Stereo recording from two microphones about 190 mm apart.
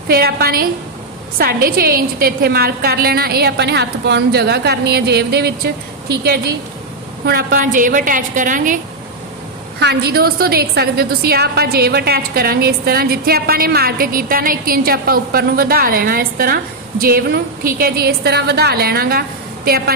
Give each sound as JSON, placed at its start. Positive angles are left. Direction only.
{"t": 0.1, "sound": "a woman's voice", "side_deg": -55}
{"t": 7.3, "sound": "a woman's voice", "side_deg": -50}
{"t": 9.8, "sound": "a woman's voice", "side_deg": -60}